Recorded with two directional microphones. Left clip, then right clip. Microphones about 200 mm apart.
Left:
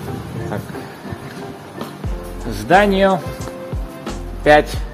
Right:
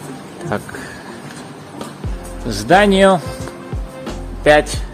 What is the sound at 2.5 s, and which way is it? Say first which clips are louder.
Speech: right 2 dB; 20° right (ahead or behind).